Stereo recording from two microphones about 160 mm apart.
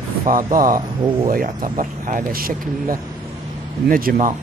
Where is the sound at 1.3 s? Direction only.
60° right (ahead or behind).